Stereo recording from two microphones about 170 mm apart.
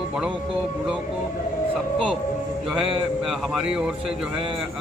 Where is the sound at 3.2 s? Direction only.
Centre (ahead or behind).